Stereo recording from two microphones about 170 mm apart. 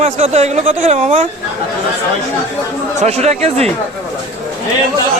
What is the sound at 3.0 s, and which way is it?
Speech, 40° right (ahead or behind).